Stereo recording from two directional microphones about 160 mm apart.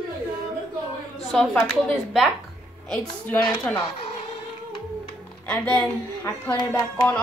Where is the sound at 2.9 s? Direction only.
10° left (ahead or behind).